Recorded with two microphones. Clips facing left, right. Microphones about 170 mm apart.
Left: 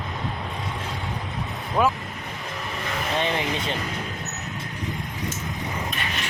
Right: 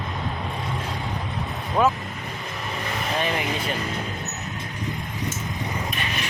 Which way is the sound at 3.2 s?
25° left (ahead or behind).